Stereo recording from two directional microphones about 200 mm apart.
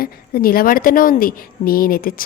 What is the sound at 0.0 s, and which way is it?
A woman's voice, 45° left (ahead or behind).